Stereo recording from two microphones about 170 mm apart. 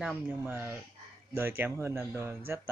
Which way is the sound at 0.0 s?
10° right (ahead or behind).